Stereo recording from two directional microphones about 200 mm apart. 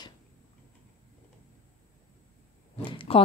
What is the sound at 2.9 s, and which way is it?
Speech, 25° left (ahead or behind).